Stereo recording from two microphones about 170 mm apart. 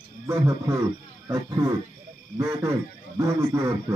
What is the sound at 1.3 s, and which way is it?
A man's voice, 20° right (ahead or behind).